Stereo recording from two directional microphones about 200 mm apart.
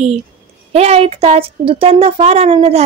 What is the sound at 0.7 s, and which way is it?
Speech, 30° right (ahead or behind).